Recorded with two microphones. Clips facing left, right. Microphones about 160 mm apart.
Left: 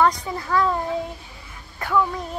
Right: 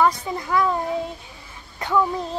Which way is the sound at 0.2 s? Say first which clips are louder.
Even; 15° right (ahead or behind).